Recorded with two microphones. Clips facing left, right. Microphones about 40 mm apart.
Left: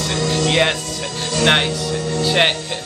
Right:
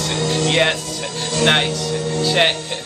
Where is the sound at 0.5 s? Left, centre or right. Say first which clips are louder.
Even; centre.